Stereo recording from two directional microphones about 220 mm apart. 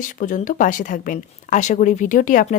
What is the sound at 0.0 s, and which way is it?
Speech, 35° left (ahead or behind).